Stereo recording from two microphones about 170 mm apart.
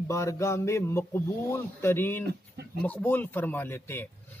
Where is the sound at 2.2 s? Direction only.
70° right (ahead or behind).